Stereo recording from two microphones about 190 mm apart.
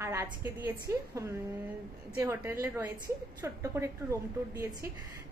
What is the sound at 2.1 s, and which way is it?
A woman's voice, 15° right (ahead or behind).